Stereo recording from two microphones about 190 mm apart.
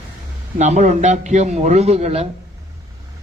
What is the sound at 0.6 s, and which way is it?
A man's voice, 40° right (ahead or behind).